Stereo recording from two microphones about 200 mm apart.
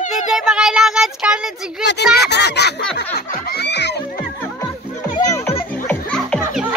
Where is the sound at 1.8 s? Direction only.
60° left (ahead or behind).